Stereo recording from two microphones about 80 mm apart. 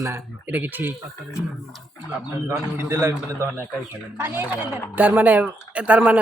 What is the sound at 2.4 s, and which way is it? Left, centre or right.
A man's voice, right.